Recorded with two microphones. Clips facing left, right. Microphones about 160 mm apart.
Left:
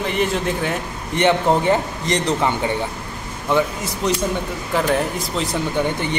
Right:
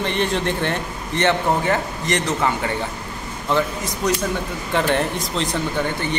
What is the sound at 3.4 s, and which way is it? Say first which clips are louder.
A man's voice: left 2 dB; 15° left (ahead or behind).